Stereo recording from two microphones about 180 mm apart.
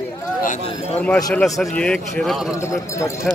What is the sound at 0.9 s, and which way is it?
A man's voice, 10° left (ahead or behind).